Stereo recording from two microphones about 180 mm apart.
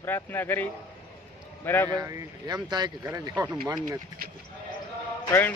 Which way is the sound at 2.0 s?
20° right (ahead or behind).